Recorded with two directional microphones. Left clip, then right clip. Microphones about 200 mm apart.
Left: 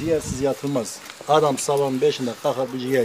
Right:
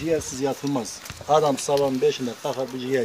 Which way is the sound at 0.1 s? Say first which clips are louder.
Left 3 dB; 10° left (ahead or behind).